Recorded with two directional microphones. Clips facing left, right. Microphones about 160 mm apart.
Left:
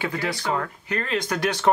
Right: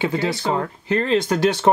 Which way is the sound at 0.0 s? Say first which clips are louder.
Right 5 dB; 25° right (ahead or behind).